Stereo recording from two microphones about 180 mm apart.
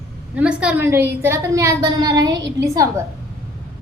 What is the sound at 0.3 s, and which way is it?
A woman's voice, 5° right (ahead or behind).